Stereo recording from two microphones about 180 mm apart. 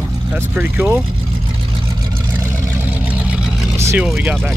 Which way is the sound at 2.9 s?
10° right (ahead or behind).